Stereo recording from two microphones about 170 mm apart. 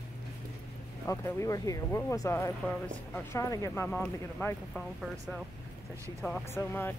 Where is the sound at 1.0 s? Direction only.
15° left (ahead or behind).